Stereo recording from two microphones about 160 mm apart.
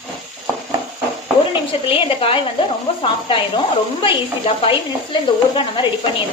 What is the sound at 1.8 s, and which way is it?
Speech, 35° left (ahead or behind).